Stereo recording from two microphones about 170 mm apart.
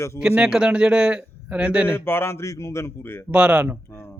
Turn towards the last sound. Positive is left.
turn(degrees=-5)  # may be behind; listen again after turning